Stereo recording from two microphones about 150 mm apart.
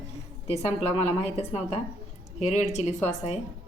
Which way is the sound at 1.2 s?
40° left (ahead or behind).